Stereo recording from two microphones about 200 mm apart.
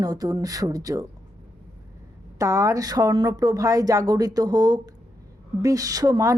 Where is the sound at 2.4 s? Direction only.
15° right (ahead or behind).